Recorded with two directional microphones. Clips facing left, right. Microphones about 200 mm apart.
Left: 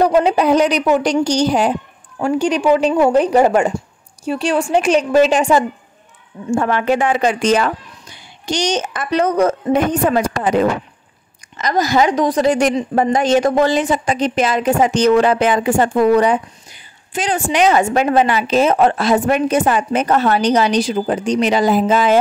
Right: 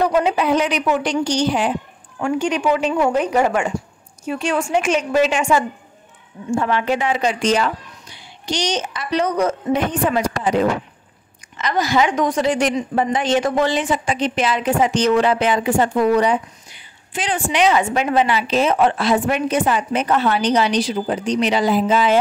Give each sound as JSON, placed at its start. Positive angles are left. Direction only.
{"t": 0.0, "sound": "a woman's voice", "side_deg": 35}
{"t": 6.5, "sound": "a woman's voice", "side_deg": 50}